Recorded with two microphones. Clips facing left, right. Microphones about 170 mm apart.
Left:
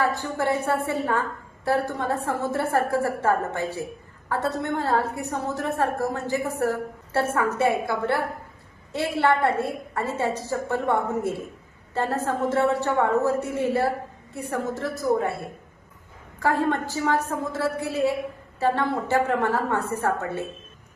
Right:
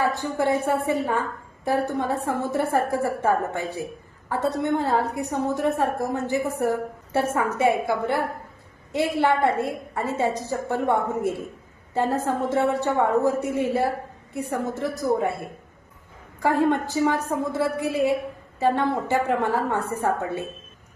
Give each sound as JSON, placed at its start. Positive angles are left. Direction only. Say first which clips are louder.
{"t": 0.0, "sound": "a woman's voice", "louder": "right 1 dB", "side_deg": -15}
{"t": 16.4, "sound": "a woman's voice", "louder": "right 2 dB", "side_deg": -15}